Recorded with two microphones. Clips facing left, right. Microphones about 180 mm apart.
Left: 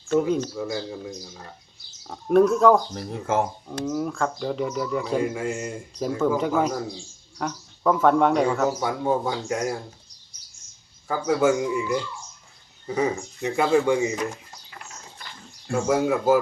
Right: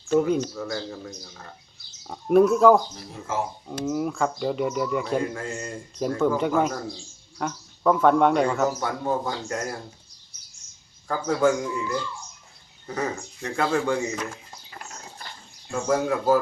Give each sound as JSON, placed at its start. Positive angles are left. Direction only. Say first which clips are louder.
{"t": 0.1, "sound": "speech", "louder": "right 1 dB", "side_deg": -5}
{"t": 0.5, "sound": "speech", "louder": "left 2 dB", "side_deg": 10}
{"t": 2.0, "sound": "speech", "louder": "even", "side_deg": -5}
{"t": 2.9, "sound": "speech", "louder": "left 6 dB", "side_deg": 60}
{"t": 3.7, "sound": "speech", "louder": "even", "side_deg": -5}
{"t": 5.2, "sound": "speech", "louder": "left 4 dB", "side_deg": 10}
{"t": 11.1, "sound": "speech", "louder": "left 1 dB", "side_deg": 5}
{"t": 12.9, "sound": "speech", "louder": "left 5 dB", "side_deg": 10}
{"t": 15.7, "sound": "speech", "louder": "left 2 dB", "side_deg": 10}